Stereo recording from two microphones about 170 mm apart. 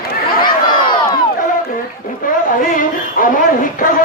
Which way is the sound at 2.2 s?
55° left (ahead or behind).